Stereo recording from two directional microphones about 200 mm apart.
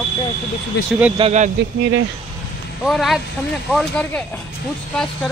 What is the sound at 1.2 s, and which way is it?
Speech, 35° right (ahead or behind).